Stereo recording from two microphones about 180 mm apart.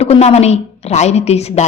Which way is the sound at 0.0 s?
35° left (ahead or behind).